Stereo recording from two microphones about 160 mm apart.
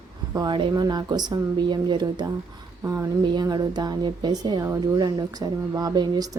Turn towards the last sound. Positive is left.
turn(degrees=-25)  # may be behind; listen again after turning